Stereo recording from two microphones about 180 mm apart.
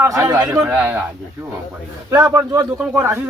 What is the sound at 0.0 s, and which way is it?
Speech, 15° right (ahead or behind).